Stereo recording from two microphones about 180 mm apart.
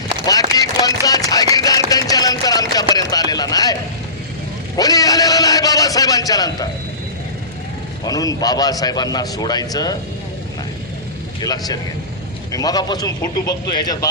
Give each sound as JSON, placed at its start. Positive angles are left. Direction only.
{"t": 0.3, "sound": "a sound", "side_deg": 20}
{"t": 2.9, "sound": "a man's voice", "side_deg": 20}
{"t": 4.8, "sound": "a man's voice", "side_deg": 20}
{"t": 8.0, "sound": "a man's voice", "side_deg": 20}
{"t": 11.3, "sound": "a man's voice", "side_deg": 20}